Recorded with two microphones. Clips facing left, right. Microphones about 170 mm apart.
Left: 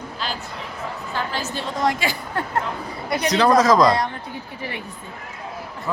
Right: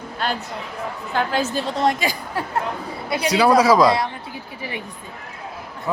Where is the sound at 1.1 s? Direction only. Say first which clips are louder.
Right 7 dB; 50° right (ahead or behind).